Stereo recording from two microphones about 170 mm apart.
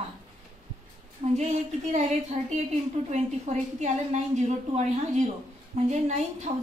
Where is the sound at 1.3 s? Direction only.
40° right (ahead or behind).